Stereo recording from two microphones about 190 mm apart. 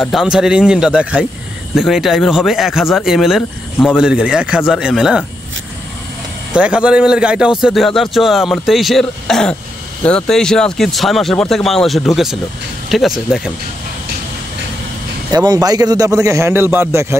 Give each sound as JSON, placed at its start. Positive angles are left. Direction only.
{"t": 0.0, "sound": "a man's voice", "side_deg": 0}
{"t": 6.5, "sound": "a man's voice", "side_deg": -5}
{"t": 15.3, "sound": "a man's voice", "side_deg": -20}